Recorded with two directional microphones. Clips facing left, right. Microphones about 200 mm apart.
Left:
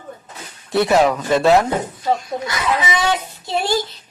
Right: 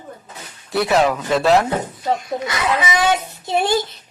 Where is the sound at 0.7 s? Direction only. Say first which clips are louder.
Left 2 dB; centre (ahead or behind).